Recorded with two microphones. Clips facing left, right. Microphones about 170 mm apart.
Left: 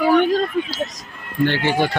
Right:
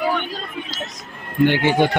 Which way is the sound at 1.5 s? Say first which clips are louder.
Right 3 dB; 15° right (ahead or behind).